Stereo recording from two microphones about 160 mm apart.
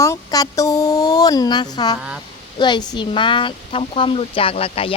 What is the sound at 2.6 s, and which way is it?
Speech, 30° left (ahead or behind).